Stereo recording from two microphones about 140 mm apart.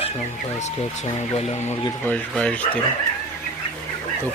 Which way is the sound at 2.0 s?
10° left (ahead or behind).